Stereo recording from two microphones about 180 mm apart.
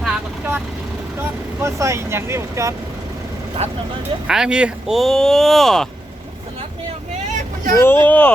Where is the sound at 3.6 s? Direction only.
35° right (ahead or behind).